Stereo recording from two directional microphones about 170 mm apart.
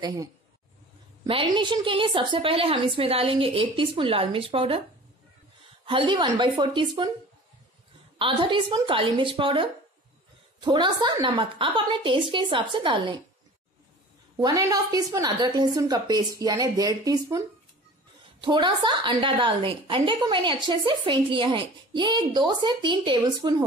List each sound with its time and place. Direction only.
1.2 s a woman's voice: 30° right (ahead or behind)
5.9 s a woman's voice: 30° right (ahead or behind)
8.2 s a woman's voice: 30° right (ahead or behind)
14.3 s a woman's voice: 20° right (ahead or behind)
18.4 s a woman's voice: 30° right (ahead or behind)